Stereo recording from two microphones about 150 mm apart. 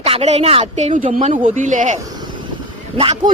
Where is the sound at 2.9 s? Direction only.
40° right (ahead or behind).